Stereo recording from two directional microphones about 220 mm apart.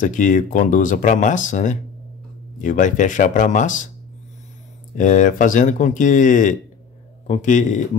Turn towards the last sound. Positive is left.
turn(degrees=35)  # may be behind; listen again after turning